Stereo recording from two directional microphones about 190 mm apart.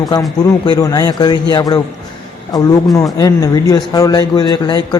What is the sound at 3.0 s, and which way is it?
A man's voice, 20° left (ahead or behind).